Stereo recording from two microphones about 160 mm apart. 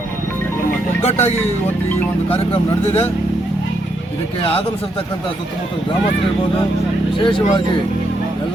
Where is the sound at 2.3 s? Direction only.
35° left (ahead or behind).